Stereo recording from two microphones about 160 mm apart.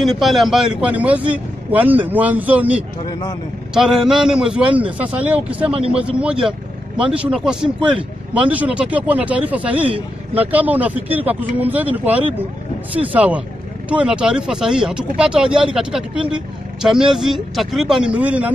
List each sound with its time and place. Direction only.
0.0 s speech: centre (ahead or behind)
3.1 s speech: 25° left (ahead or behind)
3.7 s speech: 5° right (ahead or behind)
9.8 s speech: 35° right (ahead or behind)
10.4 s speech: 10° right (ahead or behind)